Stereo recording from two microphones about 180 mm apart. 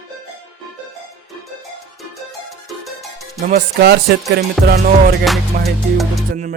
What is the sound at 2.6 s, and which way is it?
Music, centre (ahead or behind).